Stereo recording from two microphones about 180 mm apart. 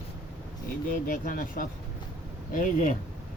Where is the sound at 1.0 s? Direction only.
50° left (ahead or behind).